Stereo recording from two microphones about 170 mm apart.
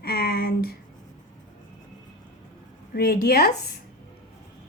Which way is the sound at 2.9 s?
65° left (ahead or behind).